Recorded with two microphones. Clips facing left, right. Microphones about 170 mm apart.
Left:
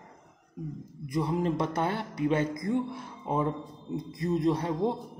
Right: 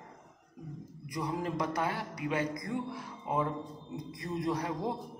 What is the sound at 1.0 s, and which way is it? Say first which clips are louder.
A man's voice: left 7 dB; 25° left (ahead or behind).